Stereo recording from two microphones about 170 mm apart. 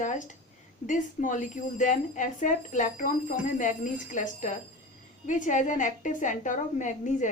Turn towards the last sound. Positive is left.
turn(degrees=45)  # may be behind; listen again after turning